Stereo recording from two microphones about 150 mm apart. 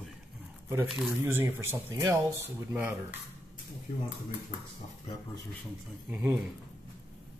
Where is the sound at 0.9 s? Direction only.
5° right (ahead or behind).